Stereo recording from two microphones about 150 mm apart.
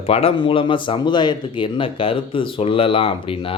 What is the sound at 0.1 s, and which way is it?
Speech, 40° left (ahead or behind).